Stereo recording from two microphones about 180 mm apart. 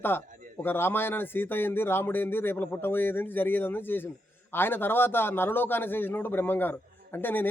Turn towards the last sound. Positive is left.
turn(degrees=10)  # may be behind; listen again after turning